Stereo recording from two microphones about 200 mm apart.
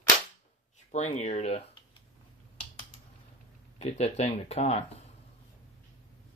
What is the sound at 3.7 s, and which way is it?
Speech, 35° left (ahead or behind).